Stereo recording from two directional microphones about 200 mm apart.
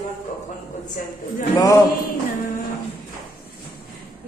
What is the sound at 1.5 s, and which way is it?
Mantra, 15° left (ahead or behind).